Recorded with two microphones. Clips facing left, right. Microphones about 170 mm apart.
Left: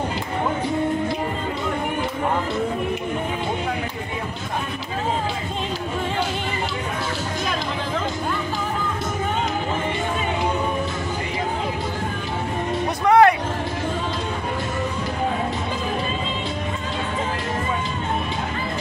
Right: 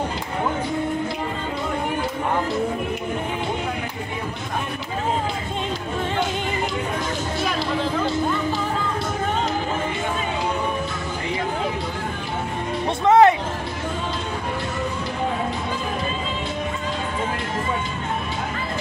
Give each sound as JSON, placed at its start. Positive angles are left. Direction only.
{"t": 13.0, "sound": "music", "side_deg": -20}